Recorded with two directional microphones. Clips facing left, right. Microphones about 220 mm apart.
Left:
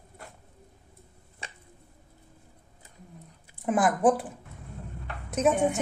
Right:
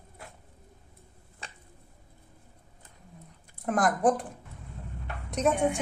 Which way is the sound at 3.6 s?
5° left (ahead or behind).